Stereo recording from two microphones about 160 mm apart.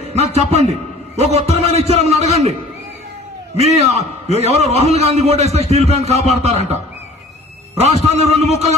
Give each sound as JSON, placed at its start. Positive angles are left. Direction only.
{"t": 0.1, "sound": "a man's voice", "side_deg": -45}
{"t": 3.5, "sound": "a man's voice", "side_deg": -40}
{"t": 7.7, "sound": "a man's voice", "side_deg": -40}